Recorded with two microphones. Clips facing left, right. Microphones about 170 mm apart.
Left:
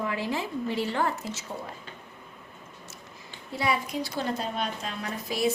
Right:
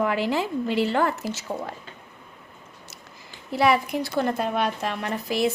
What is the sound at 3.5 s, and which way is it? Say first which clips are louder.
A woman's voice: right 7 dB; 70° right (ahead or behind).